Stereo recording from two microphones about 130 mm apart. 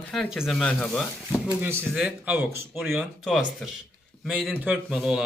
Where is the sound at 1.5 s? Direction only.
15° right (ahead or behind).